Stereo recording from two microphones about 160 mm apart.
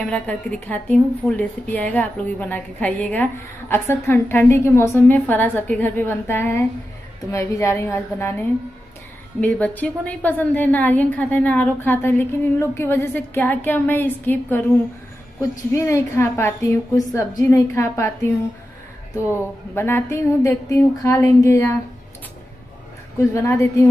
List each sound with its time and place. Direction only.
0.0 s a woman's voice: 10° left (ahead or behind)
15.7 s a woman's voice: 20° left (ahead or behind)
23.1 s a woman's voice: 20° left (ahead or behind)